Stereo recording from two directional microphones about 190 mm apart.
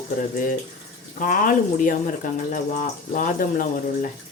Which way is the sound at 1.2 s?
45° left (ahead or behind).